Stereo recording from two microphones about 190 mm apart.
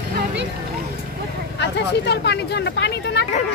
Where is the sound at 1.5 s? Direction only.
65° left (ahead or behind).